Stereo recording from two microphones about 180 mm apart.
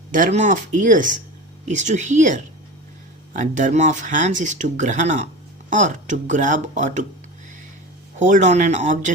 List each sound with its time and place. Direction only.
0.1 s speech: 45° right (ahead or behind)
8.2 s speech: 40° right (ahead or behind)